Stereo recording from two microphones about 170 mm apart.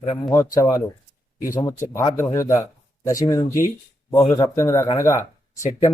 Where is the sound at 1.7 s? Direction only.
15° left (ahead or behind).